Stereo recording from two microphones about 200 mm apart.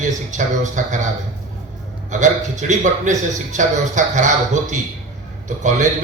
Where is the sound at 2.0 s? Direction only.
35° right (ahead or behind).